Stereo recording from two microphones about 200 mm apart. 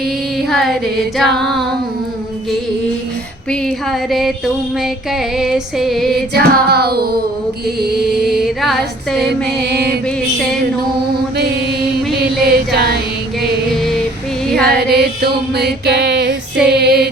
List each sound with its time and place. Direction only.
0.0 s music: centre (ahead or behind)
3.5 s music: 5° left (ahead or behind)
6.3 s music: 55° right (ahead or behind)
8.3 s music: centre (ahead or behind)
9.5 s music: 55° right (ahead or behind)
11.3 s mantra: 55° right (ahead or behind)
12.5 s music: 55° right (ahead or behind)
14.6 s music: 50° right (ahead or behind)
16.6 s female singing: 55° right (ahead or behind)